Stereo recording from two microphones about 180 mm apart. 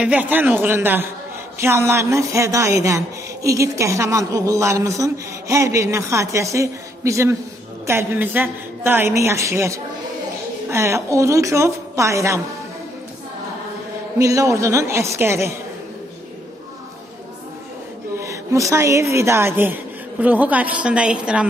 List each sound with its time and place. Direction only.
0.0 s a woman's voice: 10° right (ahead or behind)
14.1 s a woman's voice: 15° right (ahead or behind)
18.2 s a woman's voice: 15° right (ahead or behind)